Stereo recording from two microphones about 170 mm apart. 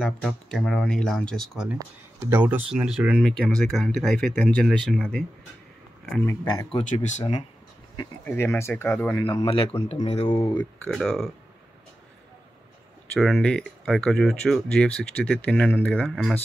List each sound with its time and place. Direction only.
0.0 s speech: centre (ahead or behind)
1.8 s speech: 15° right (ahead or behind)
3.2 s speech: 5° left (ahead or behind)
6.4 s speech: 25° left (ahead or behind)
6.9 s speech: 45° left (ahead or behind)
7.9 s speech: 20° left (ahead or behind)
8.8 s speech: 5° left (ahead or behind)
9.2 s a man's voice: 25° left (ahead or behind)
10.3 s speech: 20° left (ahead or behind)
10.6 s speech: 5° left (ahead or behind)
13.1 s speech: 5° left (ahead or behind)